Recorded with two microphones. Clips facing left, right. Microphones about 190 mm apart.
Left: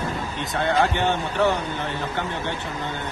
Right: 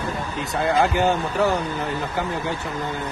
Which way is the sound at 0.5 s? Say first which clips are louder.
Right 1 dB; centre (ahead or behind).